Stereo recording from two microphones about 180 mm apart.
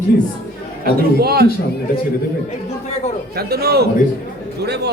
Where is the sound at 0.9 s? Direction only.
60° right (ahead or behind).